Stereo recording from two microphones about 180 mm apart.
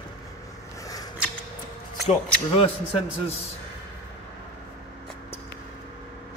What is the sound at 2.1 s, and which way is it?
Speech, 30° left (ahead or behind).